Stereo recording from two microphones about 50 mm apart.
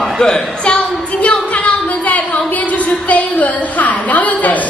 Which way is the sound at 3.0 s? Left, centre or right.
Left.